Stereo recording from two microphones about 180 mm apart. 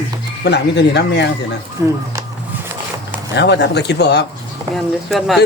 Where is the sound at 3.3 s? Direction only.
75° left (ahead or behind).